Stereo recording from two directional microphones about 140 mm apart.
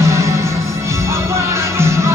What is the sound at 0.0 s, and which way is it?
Music, 20° right (ahead or behind).